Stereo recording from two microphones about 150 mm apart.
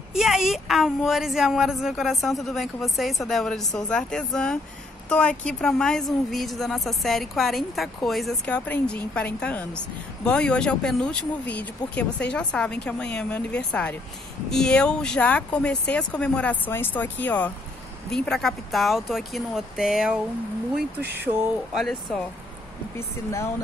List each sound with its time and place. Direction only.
0.1 s a woman's voice: centre (ahead or behind)
21.7 s a woman's voice: centre (ahead or behind)
22.9 s a woman's voice: 15° left (ahead or behind)